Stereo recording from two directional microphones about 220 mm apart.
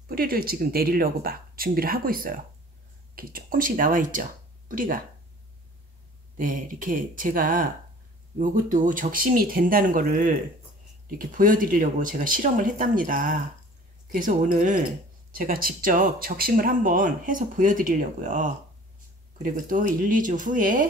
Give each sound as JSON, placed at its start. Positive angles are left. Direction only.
{"t": 0.1, "sound": "speech", "side_deg": -45}
{"t": 6.3, "sound": "speech", "side_deg": -40}